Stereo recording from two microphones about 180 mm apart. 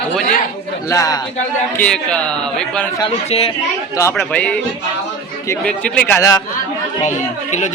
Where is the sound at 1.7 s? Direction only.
5° left (ahead or behind).